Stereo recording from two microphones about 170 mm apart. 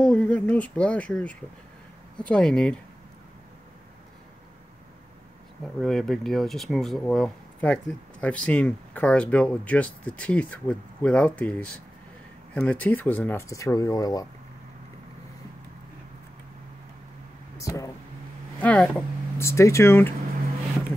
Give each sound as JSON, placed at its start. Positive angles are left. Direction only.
{"t": 0.0, "sound": "speech", "side_deg": 5}
{"t": 5.8, "sound": "speech", "side_deg": 0}
{"t": 17.6, "sound": "speech", "side_deg": 20}
{"t": 18.6, "sound": "speech", "side_deg": 10}